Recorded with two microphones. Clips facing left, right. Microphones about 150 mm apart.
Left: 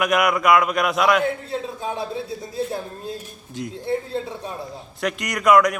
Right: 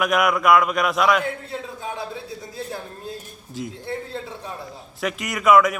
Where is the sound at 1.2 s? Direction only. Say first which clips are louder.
Left 4 dB; 25° left (ahead or behind).